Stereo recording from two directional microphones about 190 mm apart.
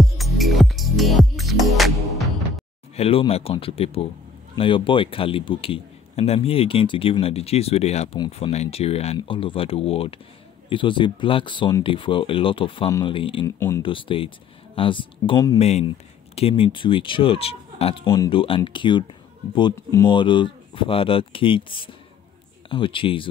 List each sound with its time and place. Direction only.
0.0 s music: centre (ahead or behind)
3.0 s a man's voice: 30° left (ahead or behind)
13.6 s speech: 15° left (ahead or behind)
13.8 s a man's voice: 25° left (ahead or behind)
15.6 s a man's voice: 35° left (ahead or behind)
18.0 s speech: 15° left (ahead or behind)
18.3 s a man's voice: 25° left (ahead or behind)